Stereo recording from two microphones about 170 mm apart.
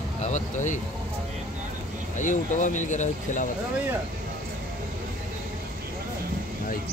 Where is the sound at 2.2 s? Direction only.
50° left (ahead or behind).